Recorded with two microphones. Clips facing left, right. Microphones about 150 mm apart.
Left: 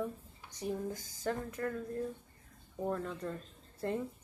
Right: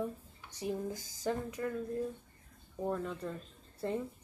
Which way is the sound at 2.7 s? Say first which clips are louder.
Even; 5° right (ahead or behind).